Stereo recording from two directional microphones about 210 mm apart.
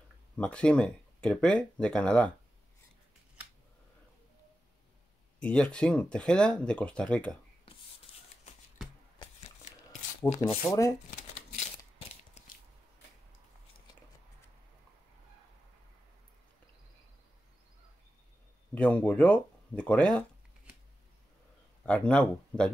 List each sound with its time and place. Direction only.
0.4 s speech: 5° left (ahead or behind)
5.4 s speech: 5° left (ahead or behind)
8.1 s shuffle: 25° left (ahead or behind)
10.3 s speech: 30° left (ahead or behind)
12.4 s biting: 30° left (ahead or behind)
18.8 s speech: 5° left (ahead or behind)
21.8 s speech: 5° left (ahead or behind)